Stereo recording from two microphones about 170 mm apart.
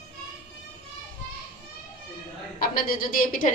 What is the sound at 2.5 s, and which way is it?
Speech, 60° left (ahead or behind).